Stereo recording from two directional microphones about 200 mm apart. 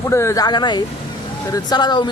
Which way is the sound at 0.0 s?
15° left (ahead or behind).